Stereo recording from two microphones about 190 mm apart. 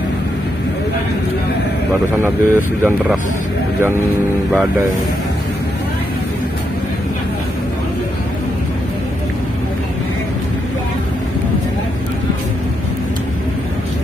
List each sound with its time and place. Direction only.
2.2 s speech: 10° right (ahead or behind)